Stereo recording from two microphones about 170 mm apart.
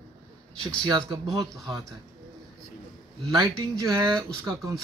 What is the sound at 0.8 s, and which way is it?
Speech, 25° right (ahead or behind).